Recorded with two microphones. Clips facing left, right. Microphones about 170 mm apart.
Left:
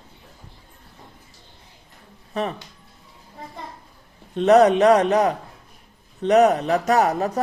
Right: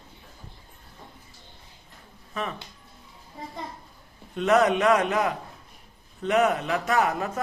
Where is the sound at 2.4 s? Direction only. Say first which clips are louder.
Left 6 dB; 35° left (ahead or behind).